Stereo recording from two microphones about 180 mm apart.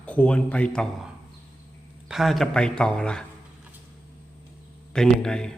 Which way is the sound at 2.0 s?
Centre (ahead or behind).